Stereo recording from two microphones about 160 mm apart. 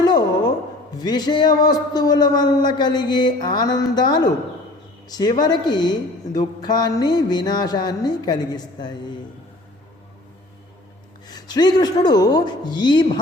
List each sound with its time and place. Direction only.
0.0 s a sound: 25° left (ahead or behind)
0.9 s a woman's voice: 25° left (ahead or behind)
11.3 s a woman's voice: 25° left (ahead or behind)